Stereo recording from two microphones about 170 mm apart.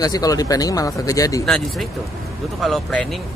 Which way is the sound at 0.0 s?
20° left (ahead or behind).